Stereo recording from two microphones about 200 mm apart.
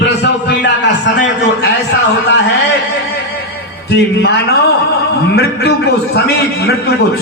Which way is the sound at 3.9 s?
55° left (ahead or behind).